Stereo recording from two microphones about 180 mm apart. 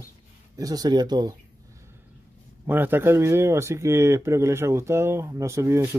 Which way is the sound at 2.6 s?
10° right (ahead or behind).